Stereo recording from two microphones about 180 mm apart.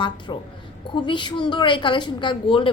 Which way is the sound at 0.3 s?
25° left (ahead or behind).